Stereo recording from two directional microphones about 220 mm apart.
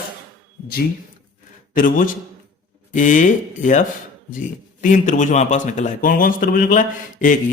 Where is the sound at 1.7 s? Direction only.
40° left (ahead or behind).